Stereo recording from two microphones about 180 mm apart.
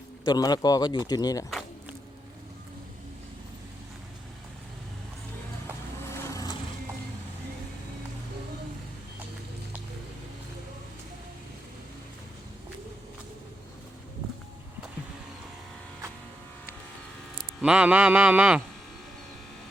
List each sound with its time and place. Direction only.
0.3 s speech: 20° left (ahead or behind)
1.5 s a sound: centre (ahead or behind)
6.1 s vehicle: 15° left (ahead or behind)
17.6 s a man's voice: 5° right (ahead or behind)